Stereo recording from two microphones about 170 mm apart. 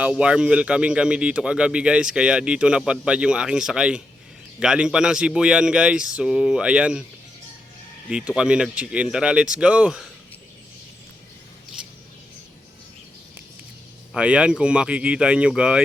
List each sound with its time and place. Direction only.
0.0 s speech: 5° right (ahead or behind)
8.4 s speech: 5° right (ahead or behind)
14.1 s speech: 5° right (ahead or behind)